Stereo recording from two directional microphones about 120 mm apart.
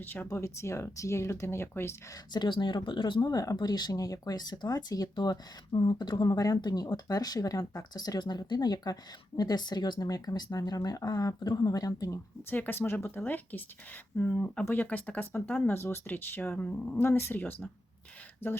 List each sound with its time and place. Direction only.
0.0 s speech: 15° left (ahead or behind)
2.3 s speech: 40° left (ahead or behind); by 17.4 s 20° left (ahead or behind)
18.4 s speech: 15° left (ahead or behind)